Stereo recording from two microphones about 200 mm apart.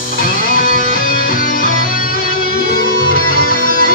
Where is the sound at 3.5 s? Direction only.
45° left (ahead or behind).